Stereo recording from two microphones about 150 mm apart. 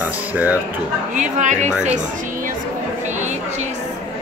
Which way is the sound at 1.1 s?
55° right (ahead or behind).